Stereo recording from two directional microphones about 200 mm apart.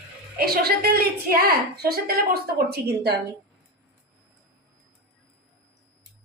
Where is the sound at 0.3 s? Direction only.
50° right (ahead or behind).